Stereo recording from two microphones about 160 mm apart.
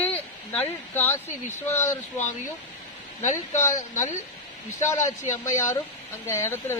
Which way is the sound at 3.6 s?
15° left (ahead or behind).